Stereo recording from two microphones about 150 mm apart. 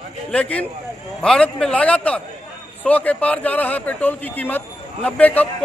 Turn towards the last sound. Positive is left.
turn(degrees=10)  # may be behind; listen again after turning